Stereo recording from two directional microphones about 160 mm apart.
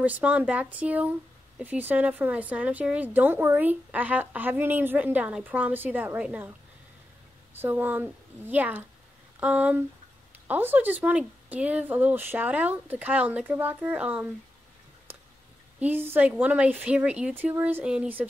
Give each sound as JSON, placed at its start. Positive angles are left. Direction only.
{"t": 0.0, "sound": "a woman's voice", "side_deg": -10}
{"t": 7.5, "sound": "a woman's voice", "side_deg": -15}
{"t": 15.8, "sound": "a woman's voice", "side_deg": -10}